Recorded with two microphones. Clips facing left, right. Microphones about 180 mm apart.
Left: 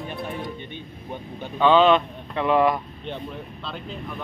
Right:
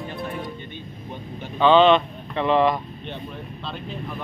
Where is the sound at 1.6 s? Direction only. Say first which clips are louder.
Right 1 dB; 5° left (ahead or behind).